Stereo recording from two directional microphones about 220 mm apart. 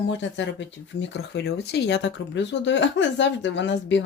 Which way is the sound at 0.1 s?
55° left (ahead or behind).